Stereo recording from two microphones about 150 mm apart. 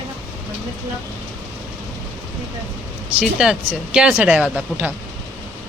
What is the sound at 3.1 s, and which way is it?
Speech, 5° right (ahead or behind).